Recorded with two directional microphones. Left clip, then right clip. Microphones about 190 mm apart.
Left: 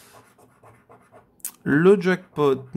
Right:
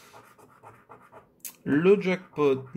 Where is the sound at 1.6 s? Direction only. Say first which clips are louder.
Left 5 dB; 40° left (ahead or behind).